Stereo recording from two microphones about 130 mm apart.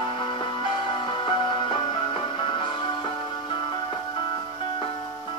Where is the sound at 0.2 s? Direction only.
40° left (ahead or behind).